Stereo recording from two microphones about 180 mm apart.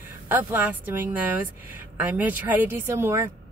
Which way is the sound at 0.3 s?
10° right (ahead or behind).